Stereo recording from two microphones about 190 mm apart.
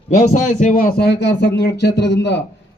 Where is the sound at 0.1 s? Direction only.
40° left (ahead or behind).